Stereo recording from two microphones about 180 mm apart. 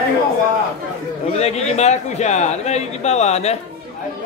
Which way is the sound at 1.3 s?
35° left (ahead or behind).